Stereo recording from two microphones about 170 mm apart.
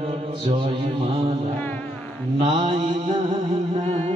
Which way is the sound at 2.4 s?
30° right (ahead or behind).